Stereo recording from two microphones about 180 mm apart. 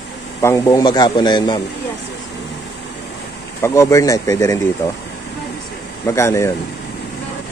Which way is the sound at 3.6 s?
15° left (ahead or behind).